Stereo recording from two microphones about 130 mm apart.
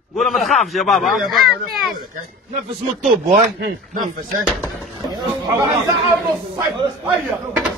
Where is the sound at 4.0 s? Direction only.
90° right.